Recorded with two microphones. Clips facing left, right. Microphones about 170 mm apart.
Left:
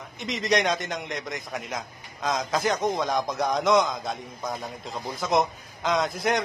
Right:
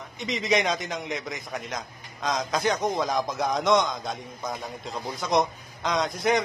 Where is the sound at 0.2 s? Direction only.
Centre (ahead or behind).